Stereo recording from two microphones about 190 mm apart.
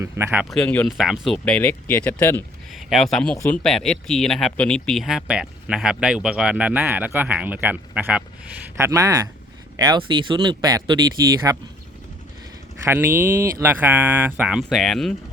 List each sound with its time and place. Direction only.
0.0 s speech: 10° right (ahead or behind)
0.5 s speech: 5° left (ahead or behind)
8.8 s speech: 20° right (ahead or behind)
12.8 s speech: 10° right (ahead or behind)